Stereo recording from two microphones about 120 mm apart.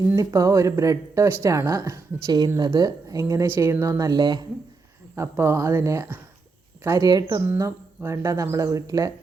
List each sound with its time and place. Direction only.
0.2 s speech: 30° right (ahead or behind)
5.1 s speech: 20° right (ahead or behind)
7.4 s speech: 20° right (ahead or behind)